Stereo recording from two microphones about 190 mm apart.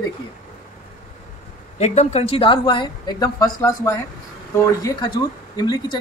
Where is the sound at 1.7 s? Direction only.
35° left (ahead or behind).